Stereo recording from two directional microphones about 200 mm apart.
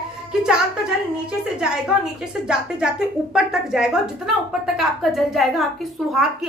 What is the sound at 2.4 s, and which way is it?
A woman's voice, 5° right (ahead or behind).